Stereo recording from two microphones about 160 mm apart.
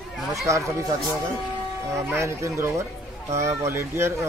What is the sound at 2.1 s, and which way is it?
A man's voice, 15° right (ahead or behind).